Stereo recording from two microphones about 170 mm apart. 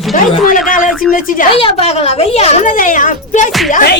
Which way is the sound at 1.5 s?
35° left (ahead or behind).